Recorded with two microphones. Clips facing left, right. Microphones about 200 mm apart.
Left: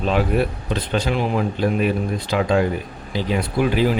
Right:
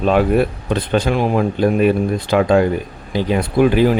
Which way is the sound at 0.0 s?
50° right (ahead or behind).